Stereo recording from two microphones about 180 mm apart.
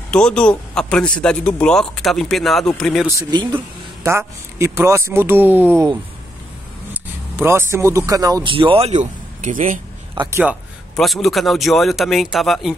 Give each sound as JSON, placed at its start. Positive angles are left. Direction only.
{"t": 0.1, "sound": "speech", "side_deg": 5}
{"t": 3.2, "sound": "a man's voice", "side_deg": -25}
{"t": 6.9, "sound": "a man's voice", "side_deg": -10}
{"t": 8.5, "sound": "speech", "side_deg": -30}
{"t": 10.3, "sound": "speech", "side_deg": -5}